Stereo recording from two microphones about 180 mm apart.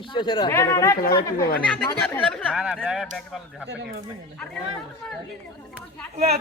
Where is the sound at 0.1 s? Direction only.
25° left (ahead or behind); by 2.4 s 10° left (ahead or behind).